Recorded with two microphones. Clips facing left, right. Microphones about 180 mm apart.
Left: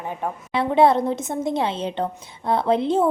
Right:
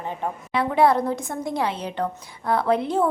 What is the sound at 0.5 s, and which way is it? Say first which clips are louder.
A woman's voice: left 2 dB; 25° left (ahead or behind).